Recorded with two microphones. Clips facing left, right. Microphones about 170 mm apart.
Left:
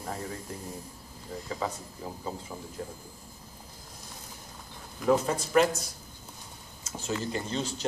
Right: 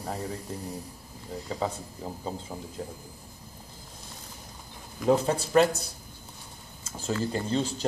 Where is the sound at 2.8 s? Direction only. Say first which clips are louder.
Right 1 dB; 30° right (ahead or behind).